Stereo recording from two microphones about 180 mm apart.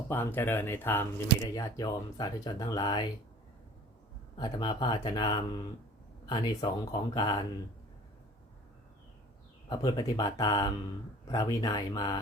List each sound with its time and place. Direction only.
0.1 s speech: 10° left (ahead or behind)
1.5 s speech: 20° left (ahead or behind)
4.4 s speech: 25° left (ahead or behind)
9.6 s speech: 20° left (ahead or behind)